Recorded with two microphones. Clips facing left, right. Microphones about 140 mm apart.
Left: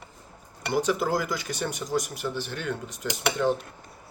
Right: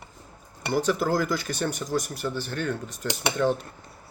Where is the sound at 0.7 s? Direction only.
15° left (ahead or behind).